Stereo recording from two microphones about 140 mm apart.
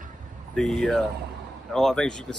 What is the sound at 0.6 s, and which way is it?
Speech, 5° left (ahead or behind).